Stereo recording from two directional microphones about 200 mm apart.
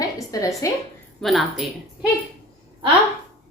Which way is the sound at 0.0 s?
15° left (ahead or behind).